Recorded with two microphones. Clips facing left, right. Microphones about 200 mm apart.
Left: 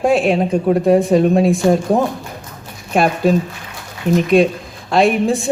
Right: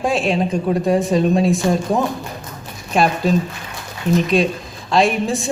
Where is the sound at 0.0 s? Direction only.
60° left (ahead or behind).